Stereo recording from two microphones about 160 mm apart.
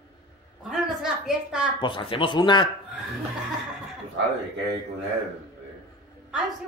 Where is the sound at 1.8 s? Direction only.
35° left (ahead or behind).